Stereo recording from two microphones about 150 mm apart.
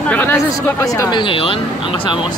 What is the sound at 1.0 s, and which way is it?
Speech, 30° left (ahead or behind).